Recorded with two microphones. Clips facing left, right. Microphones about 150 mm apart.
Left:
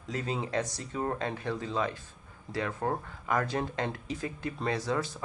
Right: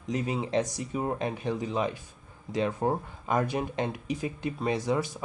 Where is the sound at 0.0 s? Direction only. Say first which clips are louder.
Right 3 dB; 20° right (ahead or behind).